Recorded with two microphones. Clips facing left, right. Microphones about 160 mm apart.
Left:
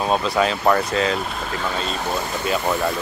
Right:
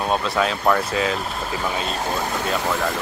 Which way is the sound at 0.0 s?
Centre (ahead or behind).